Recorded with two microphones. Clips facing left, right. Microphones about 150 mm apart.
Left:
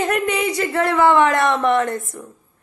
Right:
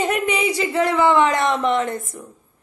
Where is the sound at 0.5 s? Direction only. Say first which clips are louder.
Even; 15° right (ahead or behind).